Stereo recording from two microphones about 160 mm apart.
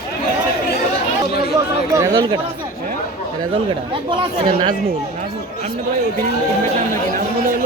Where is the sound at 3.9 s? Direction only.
30° right (ahead or behind).